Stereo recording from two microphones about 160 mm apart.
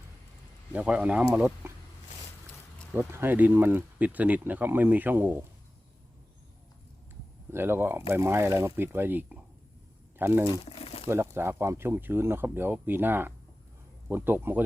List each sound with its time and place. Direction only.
0.7 s speech: 10° right (ahead or behind)
2.9 s speech: 15° right (ahead or behind)
7.5 s speech: 15° right (ahead or behind)
10.7 s a sound: 40° left (ahead or behind)
11.1 s speech: 15° right (ahead or behind)